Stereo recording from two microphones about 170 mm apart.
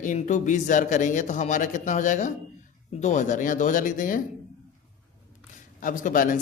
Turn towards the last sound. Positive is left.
turn(degrees=50)  # may be behind; listen again after turning